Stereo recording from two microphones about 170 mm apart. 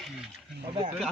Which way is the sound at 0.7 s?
30° right (ahead or behind).